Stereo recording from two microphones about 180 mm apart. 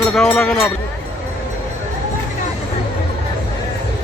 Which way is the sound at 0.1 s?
5° left (ahead or behind).